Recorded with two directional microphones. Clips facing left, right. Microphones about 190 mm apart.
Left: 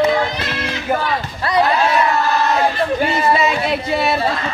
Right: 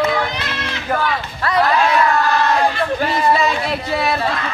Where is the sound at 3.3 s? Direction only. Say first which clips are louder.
Left 1 dB; 20° left (ahead or behind).